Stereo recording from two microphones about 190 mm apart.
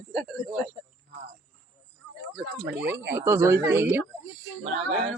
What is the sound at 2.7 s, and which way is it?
Speech, 10° right (ahead or behind).